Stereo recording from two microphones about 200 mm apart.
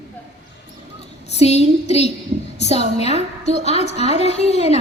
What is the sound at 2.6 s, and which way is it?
A woman's voice, 35° left (ahead or behind).